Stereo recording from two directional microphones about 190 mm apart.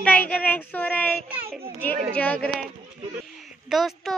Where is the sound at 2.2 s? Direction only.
5° left (ahead or behind).